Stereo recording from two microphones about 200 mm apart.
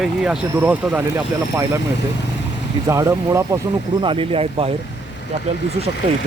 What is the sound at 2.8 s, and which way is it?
Speech, 15° right (ahead or behind).